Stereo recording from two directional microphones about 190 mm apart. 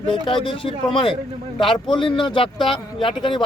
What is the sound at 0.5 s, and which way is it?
Speech, 25° left (ahead or behind).